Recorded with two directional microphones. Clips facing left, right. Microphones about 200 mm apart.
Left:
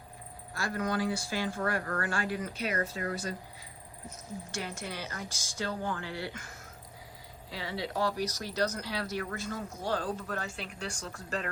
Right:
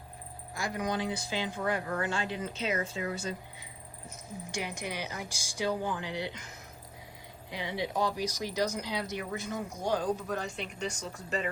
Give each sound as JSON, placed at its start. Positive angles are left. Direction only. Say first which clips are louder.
{"t": 0.5, "sound": "speech", "louder": "left 1 dB", "side_deg": -15}
{"t": 4.5, "sound": "speech", "louder": "right 3 dB", "side_deg": -15}
{"t": 10.6, "sound": "speech", "louder": "right 3 dB", "side_deg": 0}